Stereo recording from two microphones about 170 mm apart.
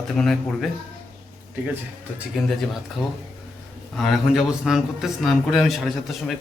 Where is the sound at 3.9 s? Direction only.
Centre (ahead or behind).